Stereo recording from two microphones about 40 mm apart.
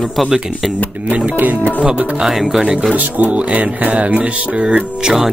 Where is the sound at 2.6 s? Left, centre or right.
Right.